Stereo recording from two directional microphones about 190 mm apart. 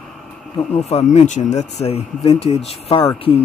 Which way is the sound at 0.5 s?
35° left (ahead or behind).